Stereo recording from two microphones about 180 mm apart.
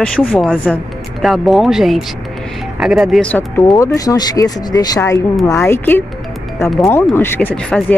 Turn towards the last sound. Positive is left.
turn(degrees=10)  # may be behind; listen again after turning